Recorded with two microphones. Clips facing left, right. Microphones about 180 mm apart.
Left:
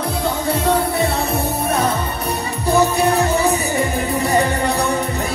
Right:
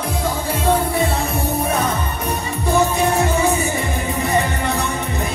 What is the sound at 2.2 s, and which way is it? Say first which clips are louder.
Music: left 1 dB; 35° left (ahead or behind).